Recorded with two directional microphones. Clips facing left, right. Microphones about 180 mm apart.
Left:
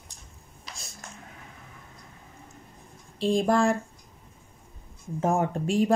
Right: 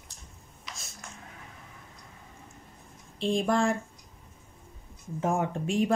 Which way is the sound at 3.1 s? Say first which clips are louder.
Left 3 dB; 35° left (ahead or behind).